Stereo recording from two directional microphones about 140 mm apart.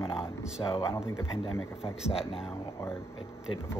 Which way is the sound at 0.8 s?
20° left (ahead or behind).